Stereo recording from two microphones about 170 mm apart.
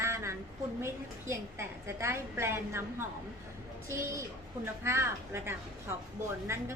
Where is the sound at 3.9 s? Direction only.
15° right (ahead or behind).